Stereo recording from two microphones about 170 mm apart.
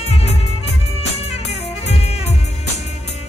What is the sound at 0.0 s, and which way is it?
Music, 35° left (ahead or behind).